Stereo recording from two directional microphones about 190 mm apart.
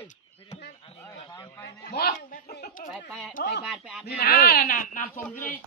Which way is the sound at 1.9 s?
55° left (ahead or behind).